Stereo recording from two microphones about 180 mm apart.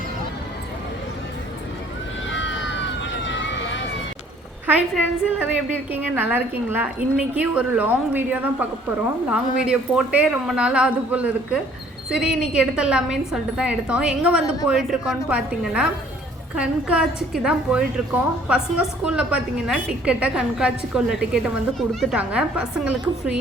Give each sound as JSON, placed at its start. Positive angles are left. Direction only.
{"t": 2.3, "sound": "emergency vehicle", "side_deg": 90}
{"t": 5.9, "sound": "a woman's voice", "side_deg": -10}